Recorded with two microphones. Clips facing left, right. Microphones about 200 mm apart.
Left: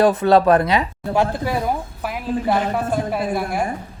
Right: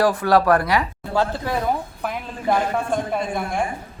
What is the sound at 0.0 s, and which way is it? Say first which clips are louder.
Speech: left 3 dB; 20° left (ahead or behind).